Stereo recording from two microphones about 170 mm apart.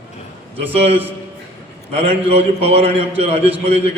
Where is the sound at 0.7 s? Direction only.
35° right (ahead or behind).